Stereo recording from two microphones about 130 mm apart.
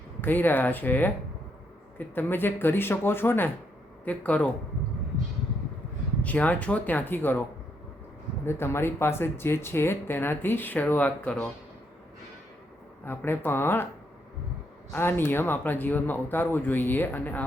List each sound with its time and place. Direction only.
0.2 s speech: 15° left (ahead or behind)
6.2 s speech: 10° left (ahead or behind)
8.4 s speech: 20° left (ahead or behind)
13.1 s speech: 15° left (ahead or behind)
14.9 s speech: 15° left (ahead or behind)